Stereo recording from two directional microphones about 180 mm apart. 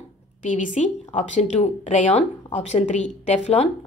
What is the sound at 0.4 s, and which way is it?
A woman's voice, 45° left (ahead or behind).